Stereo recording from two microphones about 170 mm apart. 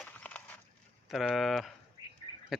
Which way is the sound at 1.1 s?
Centre (ahead or behind).